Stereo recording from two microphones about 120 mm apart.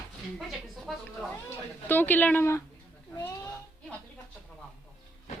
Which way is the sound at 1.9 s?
15° left (ahead or behind).